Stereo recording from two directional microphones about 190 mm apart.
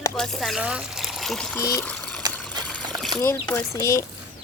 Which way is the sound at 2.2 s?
20° right (ahead or behind).